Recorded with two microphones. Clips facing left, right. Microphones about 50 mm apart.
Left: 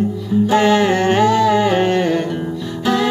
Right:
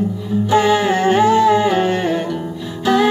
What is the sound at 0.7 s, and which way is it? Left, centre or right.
Humming, centre.